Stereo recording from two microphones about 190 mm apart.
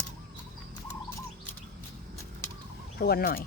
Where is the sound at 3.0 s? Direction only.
55° left (ahead or behind).